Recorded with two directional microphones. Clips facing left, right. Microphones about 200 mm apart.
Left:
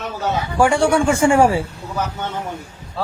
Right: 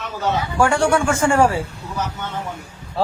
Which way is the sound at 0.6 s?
15° left (ahead or behind).